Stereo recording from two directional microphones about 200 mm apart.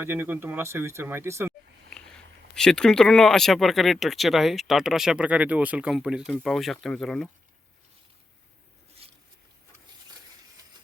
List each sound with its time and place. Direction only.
0.0 s speech: 10° right (ahead or behind)
1.9 s speech: 5° left (ahead or behind)
9.0 s patter: 30° right (ahead or behind)